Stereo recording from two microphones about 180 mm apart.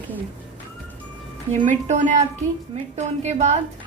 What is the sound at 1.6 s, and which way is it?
A woman's voice, 45° right (ahead or behind).